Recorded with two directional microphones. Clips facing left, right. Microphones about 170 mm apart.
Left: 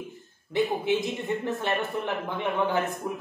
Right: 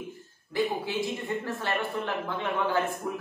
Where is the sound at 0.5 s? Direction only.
20° left (ahead or behind).